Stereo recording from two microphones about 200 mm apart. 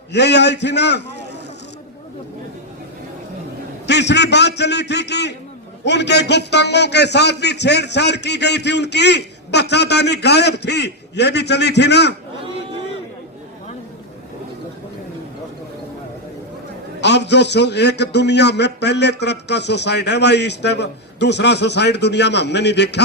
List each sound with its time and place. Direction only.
0.1 s a man's voice: 60° left (ahead or behind)
3.8 s a man's voice: 60° left (ahead or behind)
17.0 s a man's voice: 60° left (ahead or behind)